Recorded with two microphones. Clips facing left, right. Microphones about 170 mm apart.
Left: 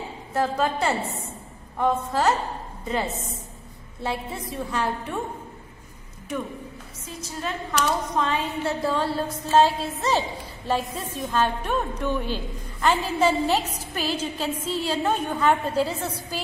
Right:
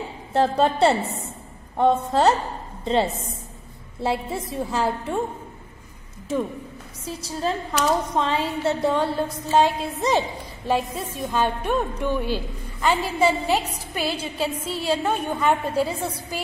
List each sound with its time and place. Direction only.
0.3 s a woman's voice: 35° right (ahead or behind)
1.0 s a woman's voice: 65° right (ahead or behind)
1.8 s a woman's voice: 35° right (ahead or behind)
2.8 s music: 30° right (ahead or behind)
7.1 s a woman's voice: 35° right (ahead or behind)
8.2 s music: 30° right (ahead or behind)
11.2 s a woman's voice: 15° right (ahead or behind)